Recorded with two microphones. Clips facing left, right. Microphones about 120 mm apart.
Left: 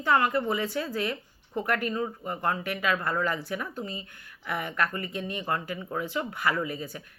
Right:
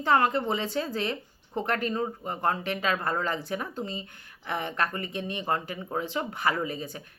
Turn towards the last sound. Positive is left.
turn(degrees=-25)  # may be behind; listen again after turning